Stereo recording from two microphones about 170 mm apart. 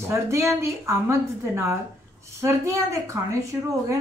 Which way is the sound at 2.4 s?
15° right (ahead or behind).